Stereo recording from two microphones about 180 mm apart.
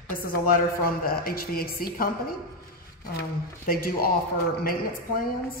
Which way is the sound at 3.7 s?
55° left (ahead or behind).